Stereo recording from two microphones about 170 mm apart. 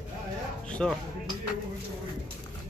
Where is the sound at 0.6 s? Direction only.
5° left (ahead or behind).